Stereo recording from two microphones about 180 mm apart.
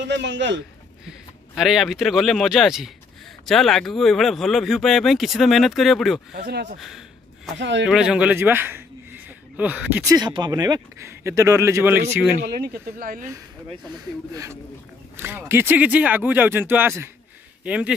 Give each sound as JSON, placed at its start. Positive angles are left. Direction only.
{"t": 0.1, "sound": "a man's voice", "side_deg": -75}
{"t": 1.0, "sound": "speech", "side_deg": 0}
{"t": 6.3, "sound": "speech", "side_deg": -60}
{"t": 6.8, "sound": "a sound", "side_deg": 0}
{"t": 7.5, "sound": "speech", "side_deg": -80}
{"t": 7.8, "sound": "speech", "side_deg": -5}
{"t": 10.1, "sound": "speech", "side_deg": -25}
{"t": 12.4, "sound": "speech", "side_deg": -60}
{"t": 14.3, "sound": "speech", "side_deg": -15}